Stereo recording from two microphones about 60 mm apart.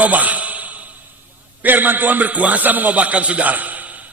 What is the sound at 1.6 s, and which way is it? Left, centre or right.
A man's voice, right.